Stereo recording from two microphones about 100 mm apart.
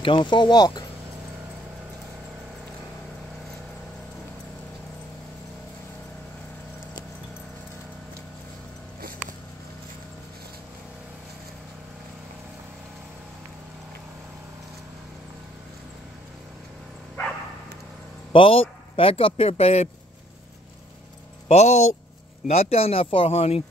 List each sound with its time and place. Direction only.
0.0 s speech: 50° left (ahead or behind)
18.3 s a man's voice: 65° left (ahead or behind); by 19.9 s 90° left
21.5 s speech: 90° left